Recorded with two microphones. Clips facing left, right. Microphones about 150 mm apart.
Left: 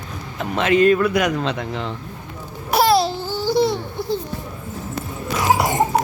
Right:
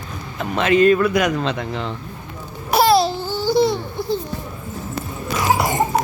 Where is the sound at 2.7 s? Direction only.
25° right (ahead or behind).